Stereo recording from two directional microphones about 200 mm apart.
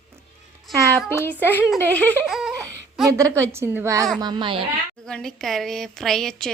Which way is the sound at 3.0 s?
15° right (ahead or behind).